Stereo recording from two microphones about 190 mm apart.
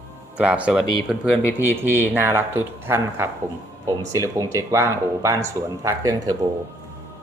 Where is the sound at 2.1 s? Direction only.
10° right (ahead or behind).